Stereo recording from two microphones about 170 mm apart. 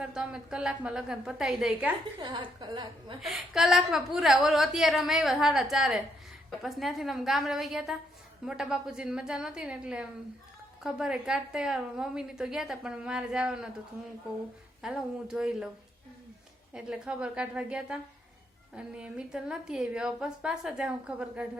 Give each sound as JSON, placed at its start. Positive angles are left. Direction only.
{"t": 0.0, "sound": "a woman's voice", "side_deg": -5}
{"t": 2.2, "sound": "a woman's voice", "side_deg": -25}
{"t": 3.2, "sound": "a woman's voice", "side_deg": 0}
{"t": 14.8, "sound": "a woman's voice", "side_deg": -5}
{"t": 16.7, "sound": "a woman's voice", "side_deg": -5}